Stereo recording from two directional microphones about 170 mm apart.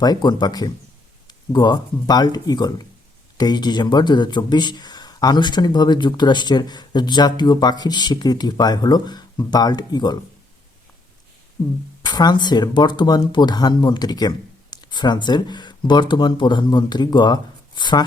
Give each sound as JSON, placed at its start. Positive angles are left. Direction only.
{"t": 0.0, "sound": "speech", "side_deg": 25}
{"t": 11.6, "sound": "speech", "side_deg": 20}